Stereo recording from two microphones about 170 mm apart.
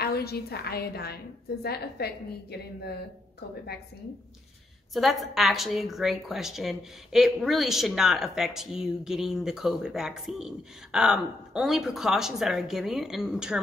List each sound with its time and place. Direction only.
0.0 s a woman's voice: 70° left (ahead or behind)
4.9 s a woman's voice: centre (ahead or behind)